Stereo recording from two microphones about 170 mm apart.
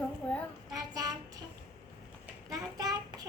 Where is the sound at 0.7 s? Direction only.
20° right (ahead or behind).